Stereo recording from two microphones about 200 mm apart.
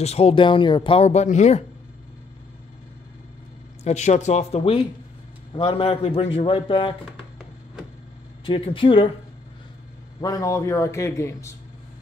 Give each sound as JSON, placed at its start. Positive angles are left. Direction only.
{"t": 0.0, "sound": "speech", "side_deg": 30}
{"t": 3.8, "sound": "a man's voice", "side_deg": 35}
{"t": 8.5, "sound": "a man's voice", "side_deg": 25}
{"t": 10.2, "sound": "a man's voice", "side_deg": 15}